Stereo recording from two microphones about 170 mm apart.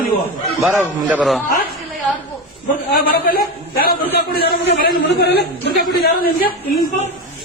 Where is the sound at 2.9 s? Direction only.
60° left (ahead or behind).